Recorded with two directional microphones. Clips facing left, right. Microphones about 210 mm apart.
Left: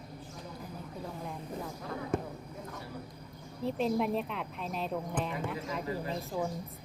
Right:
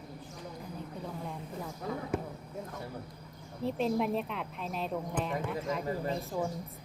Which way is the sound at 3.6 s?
Centre (ahead or behind).